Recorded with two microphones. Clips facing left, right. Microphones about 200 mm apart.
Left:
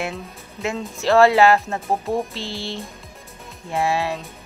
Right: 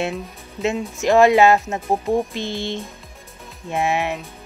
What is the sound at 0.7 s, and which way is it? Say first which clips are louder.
Speech: even; 15° right (ahead or behind).